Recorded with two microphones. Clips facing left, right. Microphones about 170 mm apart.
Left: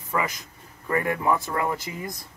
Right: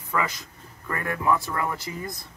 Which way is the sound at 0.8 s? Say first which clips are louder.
Left 3 dB; 20° left (ahead or behind).